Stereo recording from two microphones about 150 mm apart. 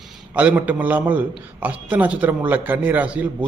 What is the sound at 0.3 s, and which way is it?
A man's voice, 10° right (ahead or behind).